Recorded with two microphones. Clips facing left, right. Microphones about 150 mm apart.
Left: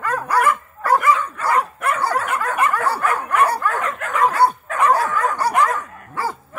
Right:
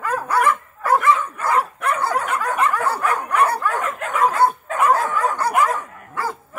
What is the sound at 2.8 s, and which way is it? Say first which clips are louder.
Dog: left 1 dB; 15° right (ahead or behind).